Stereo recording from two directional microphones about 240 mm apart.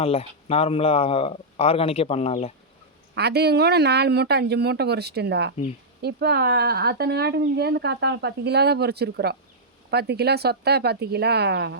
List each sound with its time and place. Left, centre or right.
0.0 s speech: left
3.2 s speech: right